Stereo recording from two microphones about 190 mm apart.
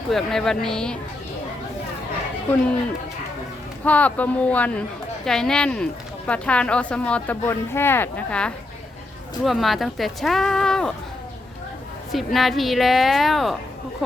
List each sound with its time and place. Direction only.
0.1 s speech: centre (ahead or behind)
3.8 s speech: 10° left (ahead or behind)
12.1 s speech: centre (ahead or behind)